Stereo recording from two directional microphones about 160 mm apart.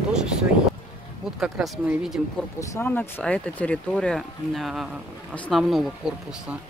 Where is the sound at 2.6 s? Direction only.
15° left (ahead or behind); by 6.2 s centre (ahead or behind).